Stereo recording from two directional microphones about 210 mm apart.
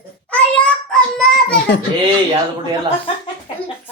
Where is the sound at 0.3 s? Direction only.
5° left (ahead or behind).